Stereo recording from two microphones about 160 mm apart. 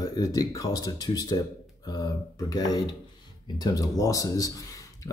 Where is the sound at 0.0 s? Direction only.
25° left (ahead or behind).